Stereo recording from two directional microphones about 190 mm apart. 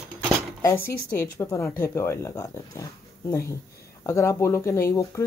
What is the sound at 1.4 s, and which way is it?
Speech, 15° left (ahead or behind).